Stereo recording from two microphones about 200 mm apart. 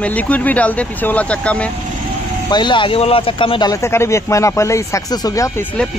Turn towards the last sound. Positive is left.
turn(degrees=10)  # may be behind; listen again after turning